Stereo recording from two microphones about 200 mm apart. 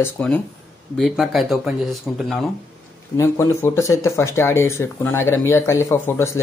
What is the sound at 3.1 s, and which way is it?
Speech, 15° left (ahead or behind).